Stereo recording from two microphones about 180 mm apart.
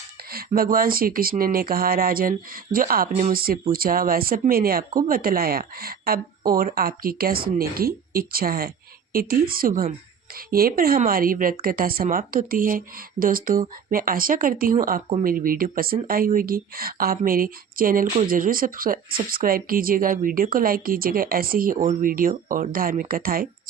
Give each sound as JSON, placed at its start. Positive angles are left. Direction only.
{"t": 0.3, "sound": "a woman's voice", "side_deg": -55}